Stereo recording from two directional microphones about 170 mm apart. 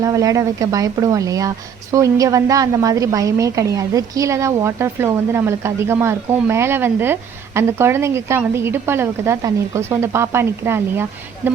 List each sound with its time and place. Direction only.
0.0 s a woman's voice: 20° right (ahead or behind)